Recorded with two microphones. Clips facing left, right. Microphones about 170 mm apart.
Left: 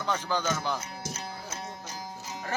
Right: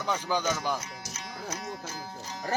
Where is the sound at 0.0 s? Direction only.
10° right (ahead or behind).